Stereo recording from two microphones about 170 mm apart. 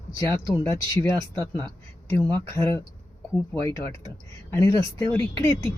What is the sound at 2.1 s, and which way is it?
Speech, 15° left (ahead or behind).